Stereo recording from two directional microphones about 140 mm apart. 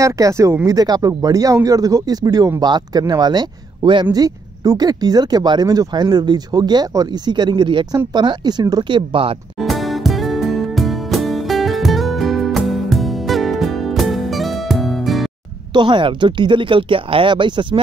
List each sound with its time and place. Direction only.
0.0 s speech: 20° right (ahead or behind); by 9.4 s 40° right (ahead or behind)
9.6 s music: centre (ahead or behind)
15.7 s speech: 35° right (ahead or behind)